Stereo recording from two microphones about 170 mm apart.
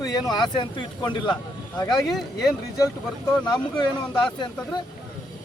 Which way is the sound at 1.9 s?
Centre (ahead or behind).